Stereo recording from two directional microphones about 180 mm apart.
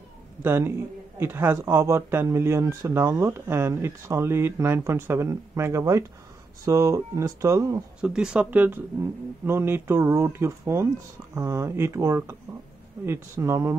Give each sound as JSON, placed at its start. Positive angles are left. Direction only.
{"t": 0.4, "sound": "speech", "side_deg": -10}
{"t": 8.0, "sound": "speech", "side_deg": -5}